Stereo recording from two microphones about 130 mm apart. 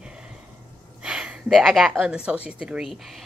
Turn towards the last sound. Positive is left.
turn(degrees=0)  # may be behind; listen again after turning